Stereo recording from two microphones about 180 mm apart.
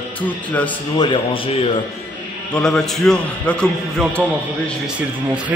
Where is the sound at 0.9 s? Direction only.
30° left (ahead or behind).